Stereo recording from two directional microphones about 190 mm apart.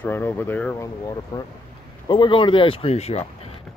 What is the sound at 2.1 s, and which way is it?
Speech, 25° left (ahead or behind).